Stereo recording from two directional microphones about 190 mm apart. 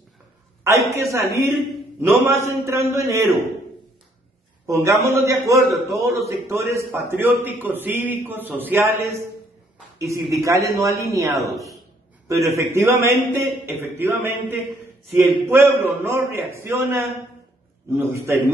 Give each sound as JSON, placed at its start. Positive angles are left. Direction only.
{"t": 1.1, "sound": "a man's voice", "side_deg": -15}
{"t": 4.6, "sound": "a man's voice", "side_deg": -15}